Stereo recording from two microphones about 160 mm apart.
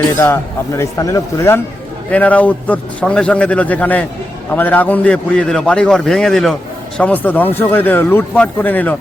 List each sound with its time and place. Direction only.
0.3 s a man's voice: 15° left (ahead or behind)